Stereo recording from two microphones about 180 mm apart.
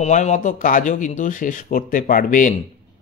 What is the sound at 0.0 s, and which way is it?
Speech, 40° left (ahead or behind).